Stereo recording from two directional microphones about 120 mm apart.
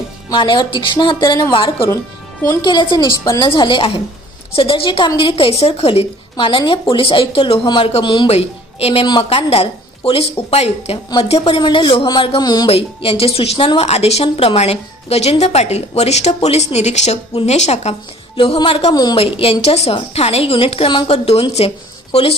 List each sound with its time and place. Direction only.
0.3 s a woman's voice: 40° left (ahead or behind); by 6.0 s 55° left (ahead or behind)
6.3 s a woman's voice: 40° left (ahead or behind)
8.3 s a woman's voice: 60° left (ahead or behind)
9.0 s a woman's voice: 40° left (ahead or behind)
9.5 s a woman's voice: 55° left (ahead or behind)
11.4 s a woman's voice: 45° left (ahead or behind)
12.6 s a woman's voice: 50° left (ahead or behind)
18.3 s a woman's voice: 45° left (ahead or behind)